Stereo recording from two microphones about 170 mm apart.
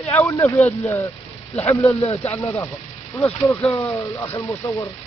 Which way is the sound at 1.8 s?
35° left (ahead or behind).